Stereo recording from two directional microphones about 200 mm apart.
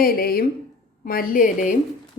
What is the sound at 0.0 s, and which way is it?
A woman's voice, 45° left (ahead or behind).